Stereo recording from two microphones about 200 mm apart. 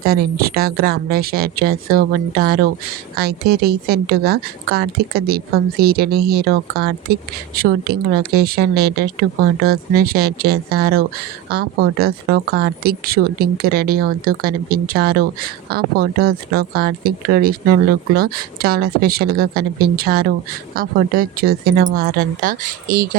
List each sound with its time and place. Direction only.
0.0 s speech: 50° right (ahead or behind)